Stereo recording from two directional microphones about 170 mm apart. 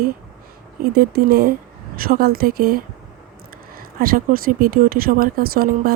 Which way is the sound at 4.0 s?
60° right (ahead or behind).